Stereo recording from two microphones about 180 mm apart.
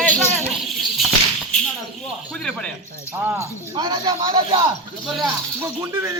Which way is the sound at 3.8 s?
25° right (ahead or behind).